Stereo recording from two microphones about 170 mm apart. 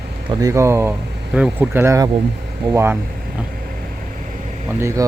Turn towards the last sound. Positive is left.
turn(degrees=-15)  # may be behind; listen again after turning